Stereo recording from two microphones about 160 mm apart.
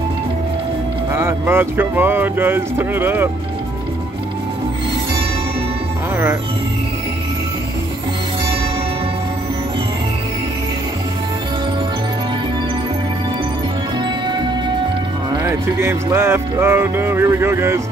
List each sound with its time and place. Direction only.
1.1 s speech: 15° right (ahead or behind)
15.4 s speech: 15° right (ahead or behind)